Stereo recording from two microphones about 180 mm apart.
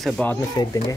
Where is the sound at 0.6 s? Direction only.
20° left (ahead or behind).